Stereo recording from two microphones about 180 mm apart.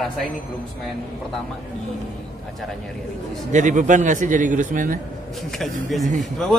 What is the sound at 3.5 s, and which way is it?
A man's voice, 45° right (ahead or behind).